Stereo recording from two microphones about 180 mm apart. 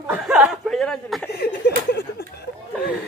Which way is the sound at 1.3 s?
65° left (ahead or behind).